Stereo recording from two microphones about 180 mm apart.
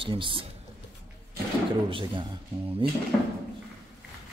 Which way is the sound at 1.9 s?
30° right (ahead or behind).